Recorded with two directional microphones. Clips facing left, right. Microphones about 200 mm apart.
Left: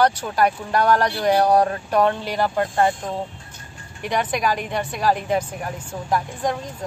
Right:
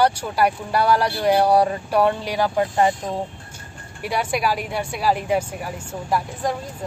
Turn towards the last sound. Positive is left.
turn(degrees=-5)  # may be behind; listen again after turning